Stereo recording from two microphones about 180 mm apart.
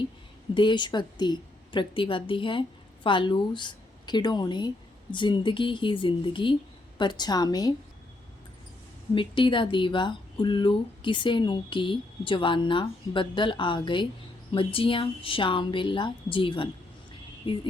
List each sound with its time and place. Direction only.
0.5 s speech: 25° left (ahead or behind)
9.1 s speech: 30° left (ahead or behind)
17.4 s music: 30° left (ahead or behind)